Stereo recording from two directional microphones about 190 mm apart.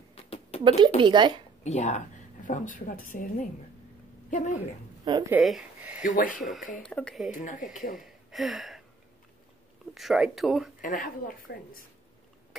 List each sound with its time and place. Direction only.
0.1 s a sound: 35° left (ahead or behind)
0.7 s speech: 25° right (ahead or behind)
1.6 s a woman's voice: 35° left (ahead or behind)
5.3 s speech: 5° right (ahead or behind)
6.0 s speech: 45° left (ahead or behind)
6.8 s speech: 5° left (ahead or behind)
7.2 s speech: 45° left (ahead or behind)
7.9 s speech: centre (ahead or behind)
9.9 s speech: centre (ahead or behind)
10.8 s speech: 45° left (ahead or behind)